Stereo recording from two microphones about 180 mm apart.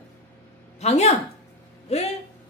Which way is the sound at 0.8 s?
35° left (ahead or behind).